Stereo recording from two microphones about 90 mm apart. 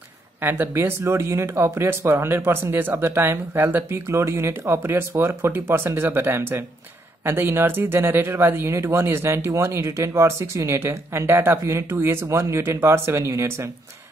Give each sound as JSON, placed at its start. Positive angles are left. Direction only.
{"t": 0.4, "sound": "speech", "side_deg": -25}